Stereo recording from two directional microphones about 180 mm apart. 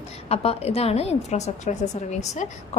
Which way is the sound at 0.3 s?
35° left (ahead or behind).